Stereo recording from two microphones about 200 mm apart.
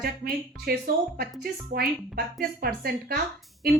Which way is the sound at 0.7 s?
50° right (ahead or behind).